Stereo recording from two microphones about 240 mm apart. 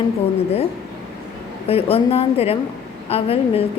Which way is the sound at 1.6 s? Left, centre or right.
Left.